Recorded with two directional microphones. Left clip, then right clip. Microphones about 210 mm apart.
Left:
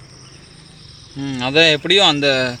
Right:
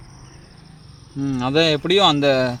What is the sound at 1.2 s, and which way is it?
Speech, 55° right (ahead or behind).